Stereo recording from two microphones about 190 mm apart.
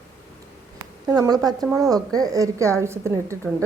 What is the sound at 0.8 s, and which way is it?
A woman's voice, 20° right (ahead or behind).